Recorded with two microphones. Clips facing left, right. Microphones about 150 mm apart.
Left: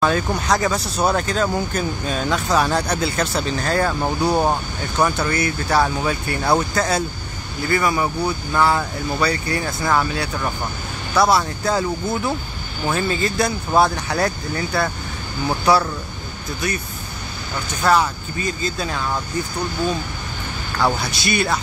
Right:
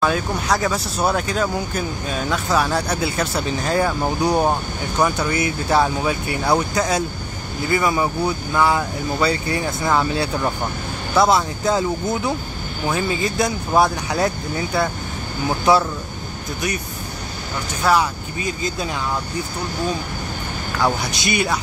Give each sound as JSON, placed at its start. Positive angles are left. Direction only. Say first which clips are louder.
{"t": 0.0, "sound": "speech", "louder": "left 1 dB", "side_deg": -5}
{"t": 4.3, "sound": "speech", "louder": "even", "side_deg": 0}
{"t": 4.9, "sound": "speech", "louder": "even", "side_deg": -10}
{"t": 17.8, "sound": "speech", "louder": "left 1 dB", "side_deg": -10}
{"t": 20.8, "sound": "speech", "louder": "even", "side_deg": -20}